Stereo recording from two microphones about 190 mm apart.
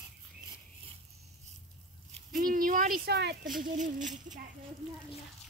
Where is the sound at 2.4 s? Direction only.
45° right (ahead or behind).